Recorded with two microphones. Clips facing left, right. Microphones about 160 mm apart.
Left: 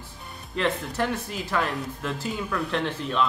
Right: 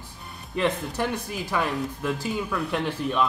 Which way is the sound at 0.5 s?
15° right (ahead or behind).